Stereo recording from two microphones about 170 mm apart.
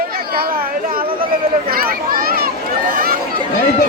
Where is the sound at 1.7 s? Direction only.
60° right (ahead or behind).